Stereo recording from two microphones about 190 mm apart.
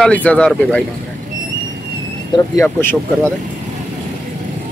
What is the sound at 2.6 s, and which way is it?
Speech, 10° left (ahead or behind).